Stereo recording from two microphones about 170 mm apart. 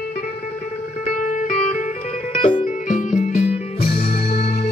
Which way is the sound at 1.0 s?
50° left (ahead or behind).